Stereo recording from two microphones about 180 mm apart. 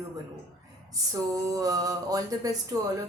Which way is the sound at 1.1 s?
20° right (ahead or behind).